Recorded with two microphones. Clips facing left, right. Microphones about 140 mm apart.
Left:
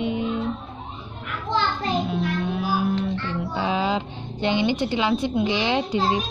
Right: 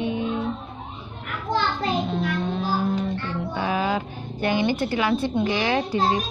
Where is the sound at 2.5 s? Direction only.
10° left (ahead or behind).